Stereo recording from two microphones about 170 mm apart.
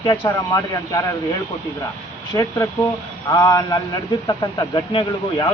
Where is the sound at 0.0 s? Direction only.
25° left (ahead or behind).